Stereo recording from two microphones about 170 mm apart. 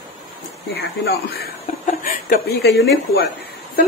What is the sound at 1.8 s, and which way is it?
Speech, 60° left (ahead or behind).